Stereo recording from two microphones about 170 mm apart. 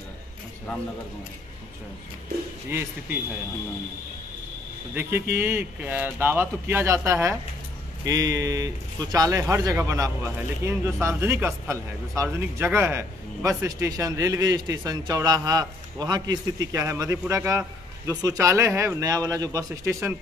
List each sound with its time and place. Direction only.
2.7 s speech: 15° right (ahead or behind)
5.3 s a man's voice: 10° right (ahead or behind)